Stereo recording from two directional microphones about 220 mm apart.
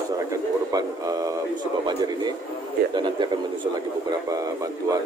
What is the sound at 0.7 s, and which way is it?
A man's voice, 15° right (ahead or behind).